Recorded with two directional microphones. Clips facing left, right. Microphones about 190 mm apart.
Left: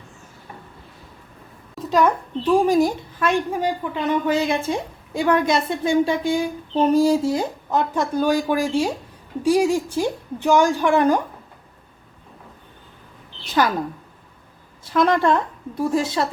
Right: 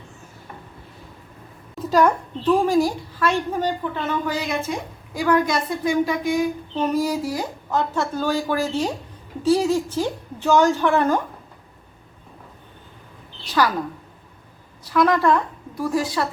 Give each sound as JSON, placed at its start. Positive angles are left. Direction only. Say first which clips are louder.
{"t": 1.9, "sound": "a child's voice", "louder": "right 1 dB", "side_deg": 0}
{"t": 2.4, "sound": "a woman's voice", "louder": "left 1 dB", "side_deg": 10}
{"t": 13.5, "sound": "speech", "louder": "left 1 dB", "side_deg": 20}
{"t": 14.8, "sound": "a woman's voice", "louder": "even", "side_deg": 25}